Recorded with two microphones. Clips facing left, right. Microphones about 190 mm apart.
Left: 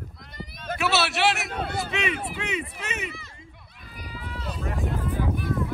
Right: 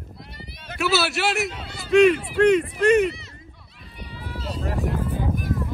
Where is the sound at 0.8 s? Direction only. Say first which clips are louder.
Right 2 dB; centre (ahead or behind).